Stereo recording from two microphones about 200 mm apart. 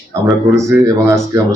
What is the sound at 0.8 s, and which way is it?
Speech, 15° right (ahead or behind).